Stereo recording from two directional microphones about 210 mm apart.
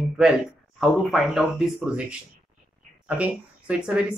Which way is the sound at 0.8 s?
Centre (ahead or behind).